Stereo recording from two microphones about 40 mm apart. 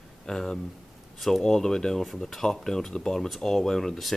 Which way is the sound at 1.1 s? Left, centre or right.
Centre.